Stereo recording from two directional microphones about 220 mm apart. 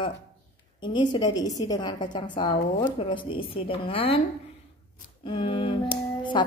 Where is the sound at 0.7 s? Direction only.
20° left (ahead or behind).